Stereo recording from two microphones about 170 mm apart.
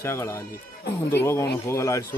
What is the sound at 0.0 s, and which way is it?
Speech, 15° left (ahead or behind).